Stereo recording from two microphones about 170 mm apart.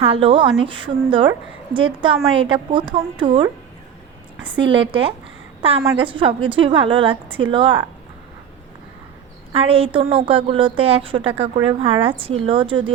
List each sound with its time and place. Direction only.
0.0 s a woman's voice: 35° right (ahead or behind)
4.5 s a woman's voice: 30° right (ahead or behind)
5.8 s a woman's voice: 20° right (ahead or behind)
9.5 s a woman's voice: 35° right (ahead or behind)